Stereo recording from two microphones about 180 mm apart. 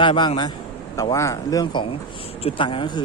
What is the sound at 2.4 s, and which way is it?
Speech, 30° left (ahead or behind).